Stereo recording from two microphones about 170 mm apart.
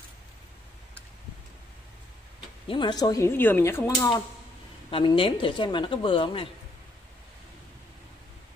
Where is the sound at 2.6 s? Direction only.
30° left (ahead or behind).